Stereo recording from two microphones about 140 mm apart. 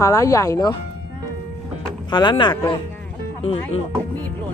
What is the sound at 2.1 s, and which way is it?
Speech, 35° left (ahead or behind).